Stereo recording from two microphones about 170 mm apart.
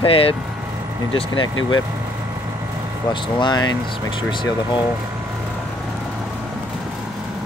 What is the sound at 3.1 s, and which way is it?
Speech, 25° left (ahead or behind).